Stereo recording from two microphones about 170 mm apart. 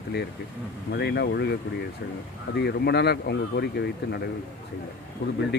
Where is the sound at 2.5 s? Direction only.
75° left (ahead or behind).